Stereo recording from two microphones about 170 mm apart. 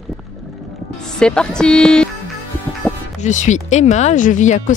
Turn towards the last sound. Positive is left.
turn(degrees=45)  # may be behind; listen again after turning